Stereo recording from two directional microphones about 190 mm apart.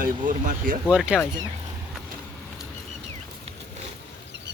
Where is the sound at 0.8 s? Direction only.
5° right (ahead or behind).